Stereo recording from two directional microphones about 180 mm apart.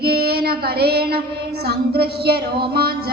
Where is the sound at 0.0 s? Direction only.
60° right (ahead or behind).